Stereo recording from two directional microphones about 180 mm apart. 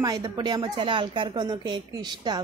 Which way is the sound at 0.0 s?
20° right (ahead or behind).